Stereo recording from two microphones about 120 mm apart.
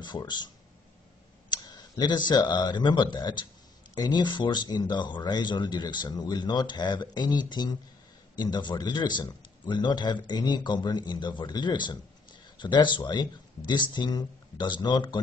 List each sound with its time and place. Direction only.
0.0 s speech: 40° left (ahead or behind)
1.5 s speech: 35° left (ahead or behind)